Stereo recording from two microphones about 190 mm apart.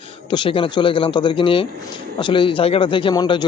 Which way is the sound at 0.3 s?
25° left (ahead or behind).